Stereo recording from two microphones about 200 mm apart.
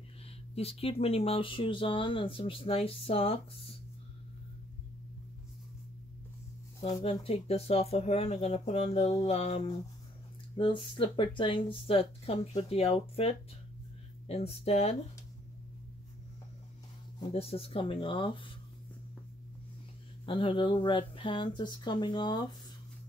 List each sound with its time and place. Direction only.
0.6 s speech: 30° left (ahead or behind)
6.9 s speech: 25° left (ahead or behind)
17.3 s speech: 30° left (ahead or behind)
20.2 s speech: 25° left (ahead or behind)